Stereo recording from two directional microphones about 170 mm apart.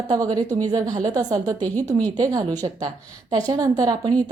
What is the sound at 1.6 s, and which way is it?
Speech, 10° left (ahead or behind).